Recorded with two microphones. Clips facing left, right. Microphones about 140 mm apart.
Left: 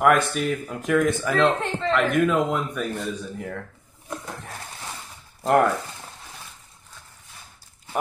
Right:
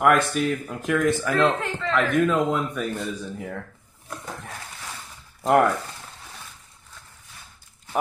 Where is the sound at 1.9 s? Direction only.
5° left (ahead or behind).